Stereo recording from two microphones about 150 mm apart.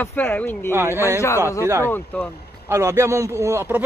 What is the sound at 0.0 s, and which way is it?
Speech, 10° left (ahead or behind).